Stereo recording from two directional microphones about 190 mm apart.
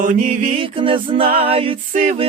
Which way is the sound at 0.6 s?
25° right (ahead or behind).